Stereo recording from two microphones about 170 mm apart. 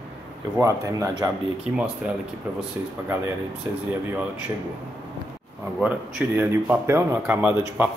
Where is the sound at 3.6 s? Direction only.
15° right (ahead or behind).